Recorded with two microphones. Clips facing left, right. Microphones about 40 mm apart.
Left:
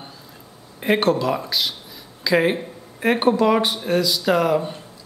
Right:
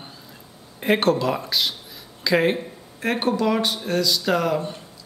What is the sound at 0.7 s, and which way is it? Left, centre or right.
Speech, centre.